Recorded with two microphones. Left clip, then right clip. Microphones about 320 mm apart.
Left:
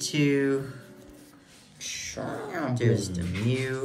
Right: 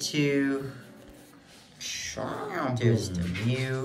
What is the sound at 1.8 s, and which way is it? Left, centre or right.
Bird, right.